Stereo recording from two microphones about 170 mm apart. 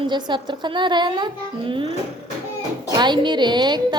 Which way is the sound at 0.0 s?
25° right (ahead or behind).